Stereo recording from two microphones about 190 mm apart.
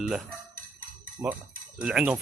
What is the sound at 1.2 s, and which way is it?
Speech, 15° right (ahead or behind).